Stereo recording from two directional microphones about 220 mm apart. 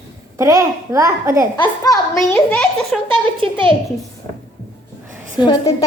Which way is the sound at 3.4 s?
20° right (ahead or behind).